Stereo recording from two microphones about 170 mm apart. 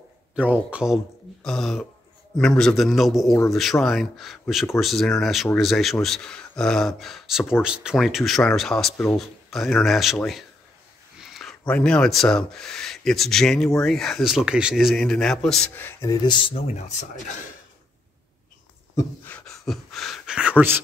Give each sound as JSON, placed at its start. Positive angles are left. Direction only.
{"t": 0.4, "sound": "a man's voice", "side_deg": -10}
{"t": 16.7, "sound": "speech", "side_deg": 45}
{"t": 18.9, "sound": "speech", "side_deg": 10}